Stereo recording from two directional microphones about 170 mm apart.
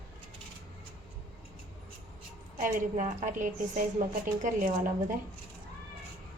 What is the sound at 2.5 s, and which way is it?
A woman's voice, 50° right (ahead or behind).